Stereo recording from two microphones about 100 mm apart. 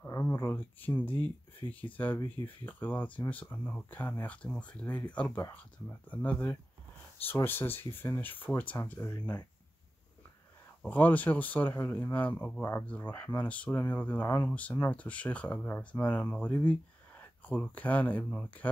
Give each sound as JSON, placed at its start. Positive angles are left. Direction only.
{"t": 0.3, "sound": "speech", "side_deg": 25}
{"t": 10.8, "sound": "speech", "side_deg": 15}